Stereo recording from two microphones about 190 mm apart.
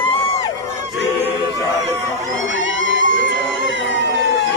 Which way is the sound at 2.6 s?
75° left (ahead or behind).